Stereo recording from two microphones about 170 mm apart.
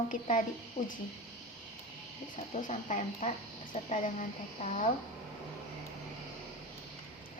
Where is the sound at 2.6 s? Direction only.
50° left (ahead or behind).